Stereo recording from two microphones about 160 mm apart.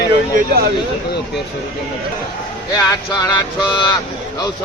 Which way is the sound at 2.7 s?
20° left (ahead or behind).